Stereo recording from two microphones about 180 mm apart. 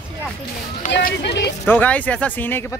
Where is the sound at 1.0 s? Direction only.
60° left (ahead or behind).